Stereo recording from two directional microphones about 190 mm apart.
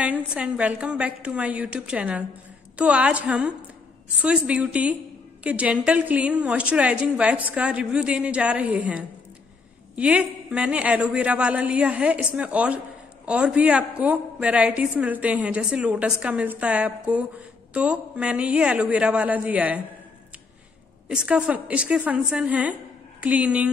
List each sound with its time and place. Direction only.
0.0 s a woman's voice: 5° right (ahead or behind)
21.1 s a woman's voice: 5° right (ahead or behind)